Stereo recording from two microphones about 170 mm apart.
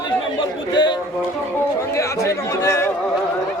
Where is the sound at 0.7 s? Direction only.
25° left (ahead or behind).